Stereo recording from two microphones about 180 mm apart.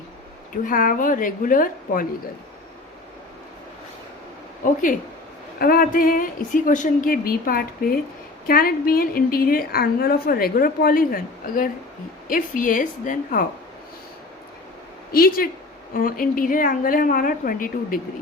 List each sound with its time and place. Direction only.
0.5 s a woman's voice: 50° left (ahead or behind)
4.6 s a woman's voice: 50° left (ahead or behind)
15.1 s a woman's voice: 55° left (ahead or behind)